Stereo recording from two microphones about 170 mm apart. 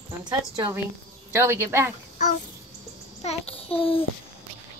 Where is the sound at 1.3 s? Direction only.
15° right (ahead or behind).